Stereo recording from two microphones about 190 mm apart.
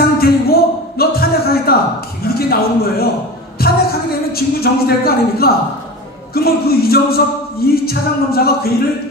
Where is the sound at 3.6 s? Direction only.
55° left (ahead or behind).